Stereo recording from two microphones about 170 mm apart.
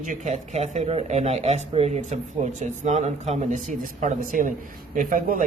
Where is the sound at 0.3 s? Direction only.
45° right (ahead or behind).